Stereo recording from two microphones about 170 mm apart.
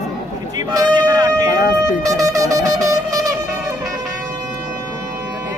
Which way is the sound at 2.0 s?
20° right (ahead or behind).